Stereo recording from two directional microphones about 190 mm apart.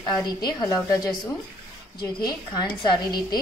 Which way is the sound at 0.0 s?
20° left (ahead or behind).